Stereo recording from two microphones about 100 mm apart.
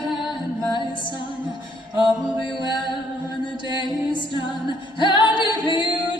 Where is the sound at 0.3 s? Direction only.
50° left (ahead or behind).